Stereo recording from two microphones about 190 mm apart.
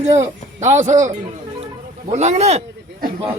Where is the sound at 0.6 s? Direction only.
40° right (ahead or behind).